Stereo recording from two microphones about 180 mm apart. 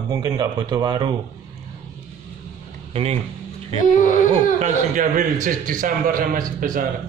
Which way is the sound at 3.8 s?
45° left (ahead or behind).